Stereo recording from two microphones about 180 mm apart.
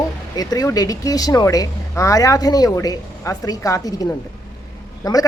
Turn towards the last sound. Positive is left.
turn(degrees=20)  # may be behind; listen again after turning